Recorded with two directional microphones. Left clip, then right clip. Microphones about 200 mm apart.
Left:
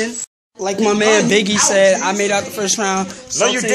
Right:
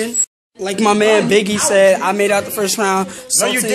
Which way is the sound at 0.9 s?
Centre (ahead or behind).